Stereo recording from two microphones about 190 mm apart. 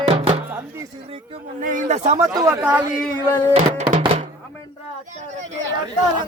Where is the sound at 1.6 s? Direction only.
40° right (ahead or behind).